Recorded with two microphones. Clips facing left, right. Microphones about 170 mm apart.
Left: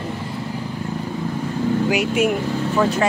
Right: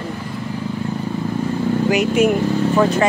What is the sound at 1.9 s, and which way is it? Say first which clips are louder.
Speech: right 3 dB; 5° left (ahead or behind).